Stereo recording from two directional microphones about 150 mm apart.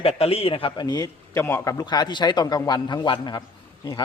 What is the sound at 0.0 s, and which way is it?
A man's voice, 40° left (ahead or behind).